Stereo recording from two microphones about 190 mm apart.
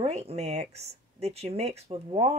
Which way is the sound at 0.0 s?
35° right (ahead or behind).